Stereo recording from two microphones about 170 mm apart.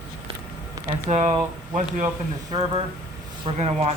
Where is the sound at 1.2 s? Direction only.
40° right (ahead or behind).